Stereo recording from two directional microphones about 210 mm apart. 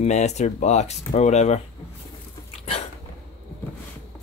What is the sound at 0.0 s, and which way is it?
Speech, 35° left (ahead or behind).